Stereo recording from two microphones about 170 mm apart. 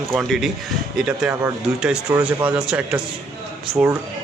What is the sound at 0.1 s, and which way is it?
Speech, centre (ahead or behind).